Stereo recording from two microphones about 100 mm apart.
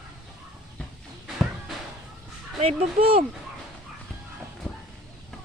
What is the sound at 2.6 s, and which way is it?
Speech, 65° right (ahead or behind).